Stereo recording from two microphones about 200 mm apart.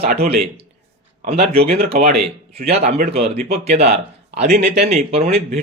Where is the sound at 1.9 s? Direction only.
40° right (ahead or behind).